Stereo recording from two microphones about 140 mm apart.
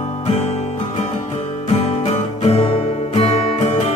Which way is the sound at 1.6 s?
50° left (ahead or behind).